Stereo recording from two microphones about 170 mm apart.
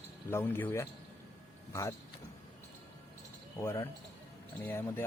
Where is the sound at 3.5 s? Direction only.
15° left (ahead or behind).